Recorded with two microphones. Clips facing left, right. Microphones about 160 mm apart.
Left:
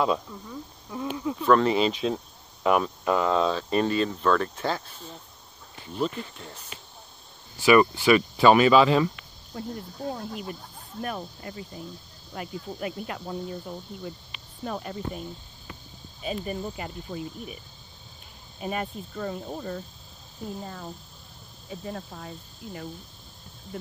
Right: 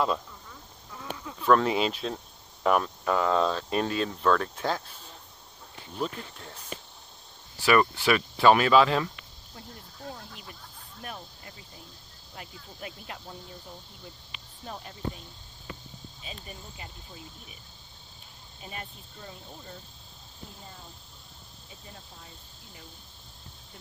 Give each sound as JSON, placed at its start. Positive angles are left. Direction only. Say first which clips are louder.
{"t": 0.9, "sound": "a sound", "louder": "left 10 dB", "side_deg": 20}
{"t": 1.4, "sound": "speech", "louder": "left 2 dB", "side_deg": 0}
{"t": 2.6, "sound": "speech", "louder": "left 2 dB", "side_deg": 10}
{"t": 7.6, "sound": "speech", "louder": "left 4 dB", "side_deg": 5}
{"t": 11.0, "sound": "speech", "louder": "left 9 dB", "side_deg": 65}
{"t": 14.6, "sound": "speech", "louder": "left 5 dB", "side_deg": 75}
{"t": 16.2, "sound": "speech", "louder": "left 15 dB", "side_deg": 60}
{"t": 18.6, "sound": "speech", "louder": "left 12 dB", "side_deg": 65}